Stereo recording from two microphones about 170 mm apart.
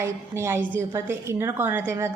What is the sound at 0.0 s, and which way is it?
A woman's voice, 15° right (ahead or behind).